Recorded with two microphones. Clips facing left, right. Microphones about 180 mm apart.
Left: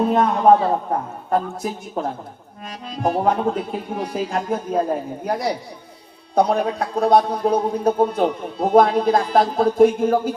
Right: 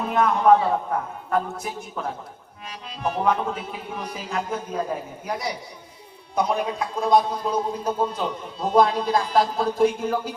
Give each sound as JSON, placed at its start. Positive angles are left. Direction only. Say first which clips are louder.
{"t": 0.0, "sound": "a man's voice", "louder": "left 4 dB", "side_deg": 35}
{"t": 2.9, "sound": "a man's voice", "louder": "left 4 dB", "side_deg": 45}